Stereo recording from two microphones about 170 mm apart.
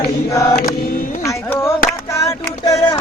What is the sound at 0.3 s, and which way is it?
Chant, 20° left (ahead or behind).